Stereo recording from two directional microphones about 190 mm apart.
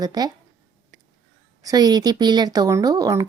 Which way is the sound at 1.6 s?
20° right (ahead or behind).